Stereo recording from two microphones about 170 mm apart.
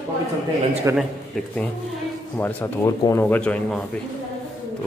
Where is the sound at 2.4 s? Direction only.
10° left (ahead or behind).